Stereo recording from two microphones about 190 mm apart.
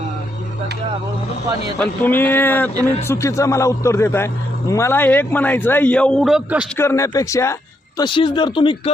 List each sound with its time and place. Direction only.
1.8 s a man's voice: 10° left (ahead or behind)
6.7 s a man's voice: 15° left (ahead or behind)